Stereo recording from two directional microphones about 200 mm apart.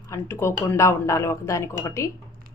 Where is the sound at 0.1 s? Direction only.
15° left (ahead or behind).